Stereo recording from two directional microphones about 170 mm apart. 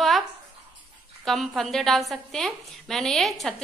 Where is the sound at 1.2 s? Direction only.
Centre (ahead or behind).